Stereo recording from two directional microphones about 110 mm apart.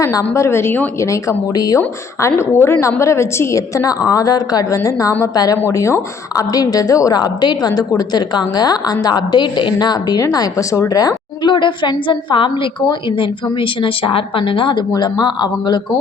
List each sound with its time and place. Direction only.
0.0 s a woman's voice: 30° left (ahead or behind)
2.2 s a woman's voice: 20° left (ahead or behind); by 15.8 s 40° left (ahead or behind)